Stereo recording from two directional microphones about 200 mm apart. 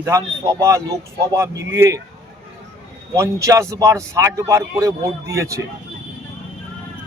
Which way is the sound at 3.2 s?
15° right (ahead or behind).